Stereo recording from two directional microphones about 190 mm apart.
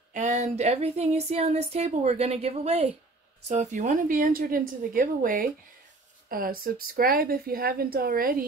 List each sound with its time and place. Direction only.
0.1 s a woman's voice: 40° right (ahead or behind)